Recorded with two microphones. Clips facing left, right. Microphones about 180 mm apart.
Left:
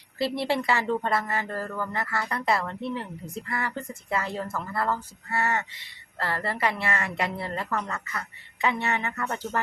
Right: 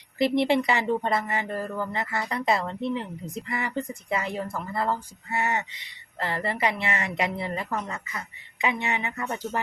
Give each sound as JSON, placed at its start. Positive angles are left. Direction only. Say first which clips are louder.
{"t": 0.2, "sound": "a woman's voice", "louder": "right 4 dB", "side_deg": -20}